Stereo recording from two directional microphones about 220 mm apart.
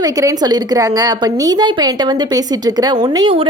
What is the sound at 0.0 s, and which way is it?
A woman's voice, 15° right (ahead or behind).